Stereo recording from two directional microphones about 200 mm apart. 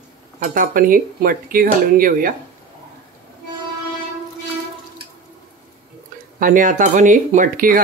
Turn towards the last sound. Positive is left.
turn(degrees=-45)  # may be behind; listen again after turning